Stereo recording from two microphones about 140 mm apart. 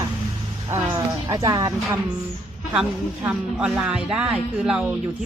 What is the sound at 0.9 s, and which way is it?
Speech, 20° right (ahead or behind).